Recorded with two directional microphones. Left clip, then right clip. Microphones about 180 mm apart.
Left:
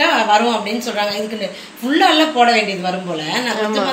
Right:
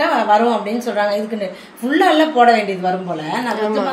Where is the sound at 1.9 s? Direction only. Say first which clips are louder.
Even; 30° right (ahead or behind).